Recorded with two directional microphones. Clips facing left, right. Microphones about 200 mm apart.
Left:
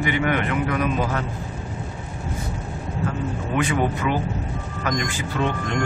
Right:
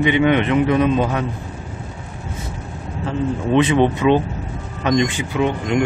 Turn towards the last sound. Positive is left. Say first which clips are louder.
# right 6 dB
turn(degrees=-15)  # may be behind; listen again after turning